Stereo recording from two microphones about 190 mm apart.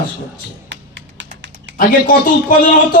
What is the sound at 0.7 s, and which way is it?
Tap, 70° right (ahead or behind).